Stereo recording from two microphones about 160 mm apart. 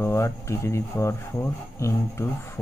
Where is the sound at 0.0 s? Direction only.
20° left (ahead or behind).